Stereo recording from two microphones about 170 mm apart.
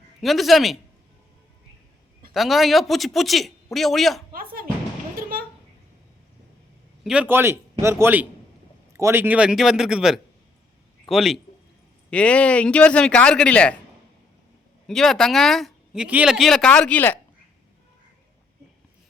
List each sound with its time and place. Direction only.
0.2 s speech: centre (ahead or behind)
2.3 s speech: centre (ahead or behind)
4.3 s music: 60° right (ahead or behind)
7.0 s a man's voice: 5° right (ahead or behind)
14.8 s speech: centre (ahead or behind)